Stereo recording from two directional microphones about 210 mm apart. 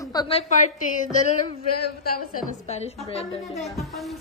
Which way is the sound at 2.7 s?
30° left (ahead or behind).